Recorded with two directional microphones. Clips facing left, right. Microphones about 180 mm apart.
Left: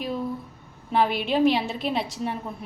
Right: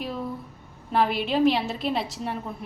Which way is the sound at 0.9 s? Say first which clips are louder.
Left 1 dB; centre (ahead or behind).